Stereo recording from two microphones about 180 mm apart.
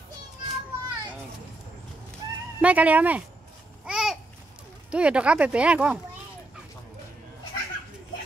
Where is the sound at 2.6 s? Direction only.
10° right (ahead or behind).